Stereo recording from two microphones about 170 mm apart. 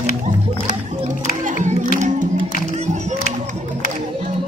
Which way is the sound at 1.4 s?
50° right (ahead or behind).